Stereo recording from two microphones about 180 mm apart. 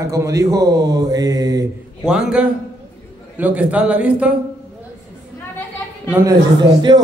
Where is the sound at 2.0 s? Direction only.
5° right (ahead or behind).